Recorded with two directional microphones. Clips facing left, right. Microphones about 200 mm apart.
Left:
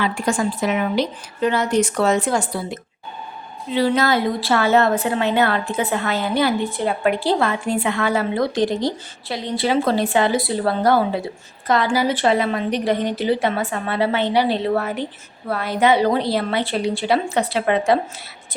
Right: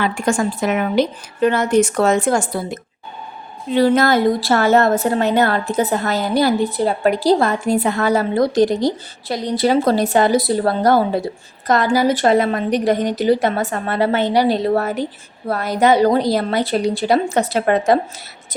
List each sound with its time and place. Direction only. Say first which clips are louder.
0.0 s a woman's voice: right 2 dB; 45° right (ahead or behind)